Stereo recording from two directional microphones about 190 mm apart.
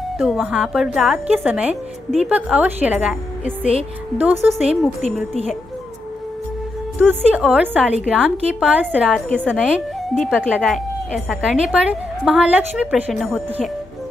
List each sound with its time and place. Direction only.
0.2 s a woman's voice: centre (ahead or behind)
4.2 s speech: 5° right (ahead or behind)
5.3 s a woman's voice: 35° left (ahead or behind)
7.0 s a woman's voice: 5° right (ahead or behind)